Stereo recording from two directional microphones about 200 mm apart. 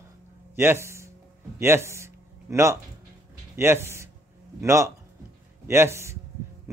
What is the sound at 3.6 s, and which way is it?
A man's voice, 10° right (ahead or behind).